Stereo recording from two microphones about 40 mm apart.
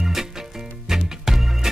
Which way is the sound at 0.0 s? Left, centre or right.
Centre.